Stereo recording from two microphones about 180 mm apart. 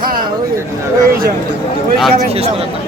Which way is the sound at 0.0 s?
55° right (ahead or behind).